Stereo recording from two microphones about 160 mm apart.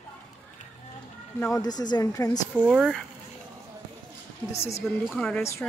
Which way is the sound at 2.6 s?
5° right (ahead or behind).